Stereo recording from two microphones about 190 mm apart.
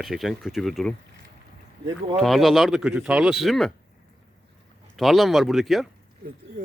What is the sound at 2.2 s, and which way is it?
A man's voice, centre (ahead or behind).